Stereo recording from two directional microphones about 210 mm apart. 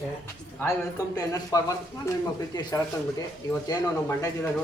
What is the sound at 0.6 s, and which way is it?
A man's voice, 15° left (ahead or behind).